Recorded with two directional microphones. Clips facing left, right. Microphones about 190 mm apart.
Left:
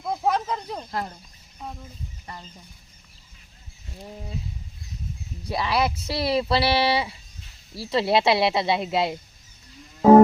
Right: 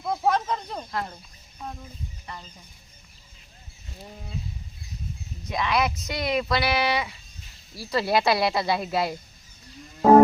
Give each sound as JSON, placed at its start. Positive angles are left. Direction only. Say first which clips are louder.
{"t": 0.0, "sound": "a sound", "louder": "even", "side_deg": 5}
{"t": 5.5, "sound": "speech", "louder": "left 1 dB", "side_deg": 35}
{"t": 10.0, "sound": "music", "louder": "left 2 dB", "side_deg": 5}